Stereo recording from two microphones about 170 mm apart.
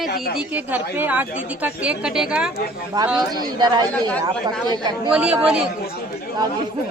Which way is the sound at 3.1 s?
25° right (ahead or behind).